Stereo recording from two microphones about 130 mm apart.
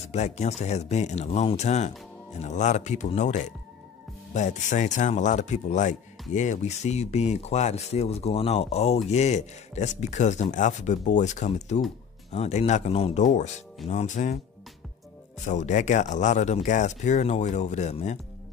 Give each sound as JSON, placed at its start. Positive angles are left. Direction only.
{"t": 0.0, "sound": "speech", "side_deg": 60}
{"t": 12.9, "sound": "speech", "side_deg": 50}
{"t": 13.8, "sound": "speech", "side_deg": 65}
{"t": 15.4, "sound": "speech", "side_deg": 70}